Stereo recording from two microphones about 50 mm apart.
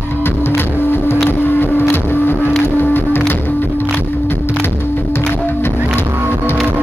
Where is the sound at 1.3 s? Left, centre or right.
Left.